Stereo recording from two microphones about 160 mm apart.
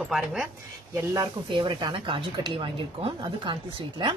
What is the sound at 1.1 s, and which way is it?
Speech, 30° right (ahead or behind).